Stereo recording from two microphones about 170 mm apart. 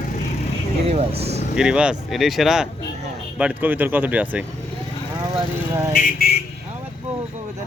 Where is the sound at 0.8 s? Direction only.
40° right (ahead or behind).